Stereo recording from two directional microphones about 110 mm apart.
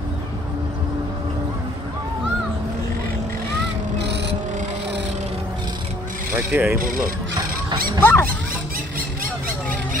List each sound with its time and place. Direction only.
6.3 s speech: 20° right (ahead or behind)
8.0 s speech: 20° left (ahead or behind)